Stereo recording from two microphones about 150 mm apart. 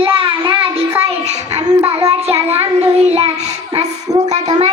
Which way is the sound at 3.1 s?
45° right (ahead or behind).